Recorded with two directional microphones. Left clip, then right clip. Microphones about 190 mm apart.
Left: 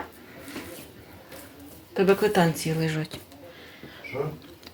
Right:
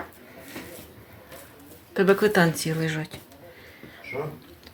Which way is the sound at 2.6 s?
5° left (ahead or behind).